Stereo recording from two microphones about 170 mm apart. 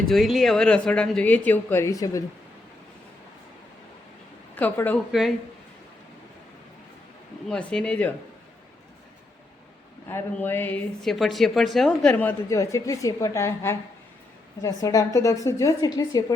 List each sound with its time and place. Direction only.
0.1 s a woman's voice: centre (ahead or behind); by 2.2 s 20° left (ahead or behind)
4.5 s a woman's voice: 10° left (ahead or behind)
7.4 s speech: 5° left (ahead or behind)
10.1 s a woman's voice: 15° left (ahead or behind)